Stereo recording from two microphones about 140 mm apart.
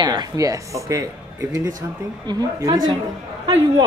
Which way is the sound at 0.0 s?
30° right (ahead or behind).